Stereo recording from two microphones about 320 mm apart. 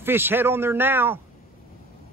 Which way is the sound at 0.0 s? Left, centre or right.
Centre.